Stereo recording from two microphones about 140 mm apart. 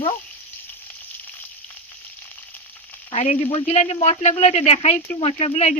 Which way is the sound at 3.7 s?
50° left (ahead or behind).